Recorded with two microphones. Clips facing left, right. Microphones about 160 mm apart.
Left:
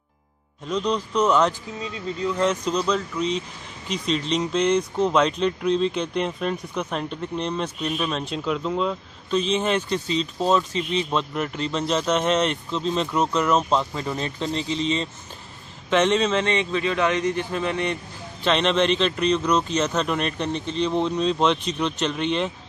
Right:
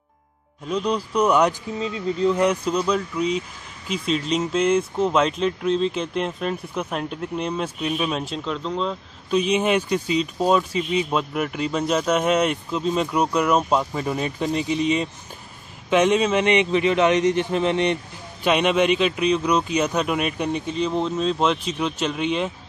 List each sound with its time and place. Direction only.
0.7 s a man's voice: 10° right (ahead or behind)
1.8 s a man's voice: 25° right (ahead or behind)
2.4 s a man's voice: 10° right (ahead or behind)
8.5 s speech: 5° left (ahead or behind)
9.3 s a man's voice: 10° right (ahead or behind)
18.4 s a man's voice: 10° right (ahead or behind)